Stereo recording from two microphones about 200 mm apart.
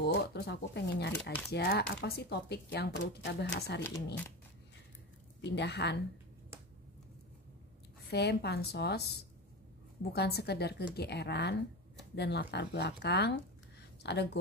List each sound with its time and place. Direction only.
0.0 s speech: 55° left (ahead or behind)
3.8 s speech: 10° left (ahead or behind)
5.4 s speech: 60° left (ahead or behind)
8.1 s speech: 55° left (ahead or behind)
10.1 s speech: 55° left (ahead or behind)